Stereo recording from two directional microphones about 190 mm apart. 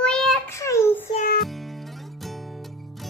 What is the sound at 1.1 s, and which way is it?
Music, 45° left (ahead or behind).